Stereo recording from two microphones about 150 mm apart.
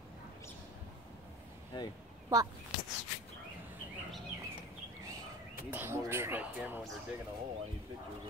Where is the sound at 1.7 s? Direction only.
30° left (ahead or behind).